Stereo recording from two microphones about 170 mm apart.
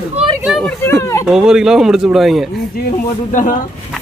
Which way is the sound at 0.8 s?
15° left (ahead or behind).